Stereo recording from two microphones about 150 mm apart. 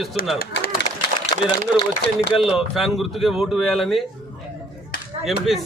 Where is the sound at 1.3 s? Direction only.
40° left (ahead or behind).